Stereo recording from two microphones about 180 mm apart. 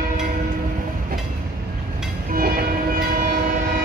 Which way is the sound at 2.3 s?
55° right (ahead or behind).